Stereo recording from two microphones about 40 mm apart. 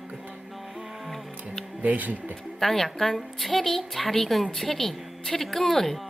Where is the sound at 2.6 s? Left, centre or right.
Centre.